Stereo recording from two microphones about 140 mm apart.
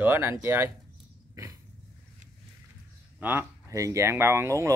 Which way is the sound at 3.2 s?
15° right (ahead or behind).